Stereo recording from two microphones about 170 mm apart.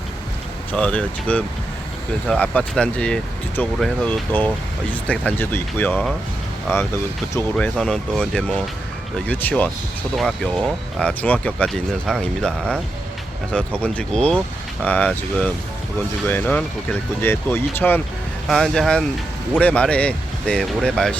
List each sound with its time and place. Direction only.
0.7 s speech: 5° left (ahead or behind)